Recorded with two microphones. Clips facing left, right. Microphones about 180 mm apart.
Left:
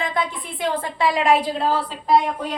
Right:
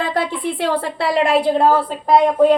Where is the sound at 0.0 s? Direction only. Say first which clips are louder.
Right 5 dB; 70° right (ahead or behind); by 2.0 s 50° right (ahead or behind).